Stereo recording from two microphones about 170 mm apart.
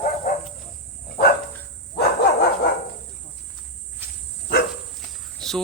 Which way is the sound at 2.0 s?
65° left (ahead or behind).